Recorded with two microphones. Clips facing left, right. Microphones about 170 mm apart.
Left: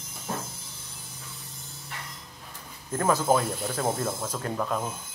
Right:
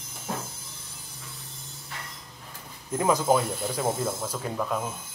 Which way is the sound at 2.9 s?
15° right (ahead or behind).